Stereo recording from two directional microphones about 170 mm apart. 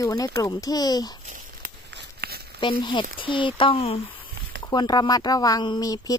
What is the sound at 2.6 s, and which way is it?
A woman's voice, 30° left (ahead or behind).